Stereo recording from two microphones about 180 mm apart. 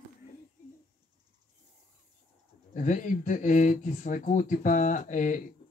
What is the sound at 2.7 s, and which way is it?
Speech, 45° left (ahead or behind).